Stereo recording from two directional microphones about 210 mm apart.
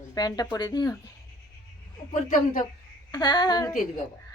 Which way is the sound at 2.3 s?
40° left (ahead or behind).